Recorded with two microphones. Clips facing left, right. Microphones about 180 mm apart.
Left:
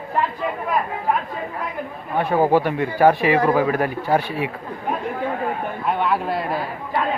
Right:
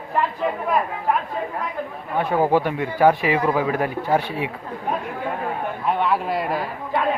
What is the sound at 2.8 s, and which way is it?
Speech, 15° right (ahead or behind).